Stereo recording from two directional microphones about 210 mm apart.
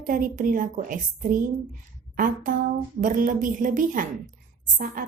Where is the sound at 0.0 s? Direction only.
40° right (ahead or behind).